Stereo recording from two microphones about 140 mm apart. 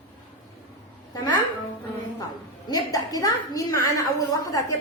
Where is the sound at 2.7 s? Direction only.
25° left (ahead or behind).